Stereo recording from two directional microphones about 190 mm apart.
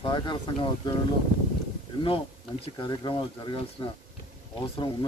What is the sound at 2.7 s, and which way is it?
Speech, 25° left (ahead or behind).